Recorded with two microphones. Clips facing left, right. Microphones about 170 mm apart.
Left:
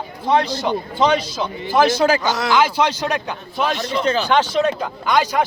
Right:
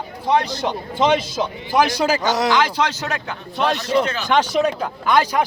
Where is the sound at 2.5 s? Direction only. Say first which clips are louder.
Left 2 dB; 10° left (ahead or behind).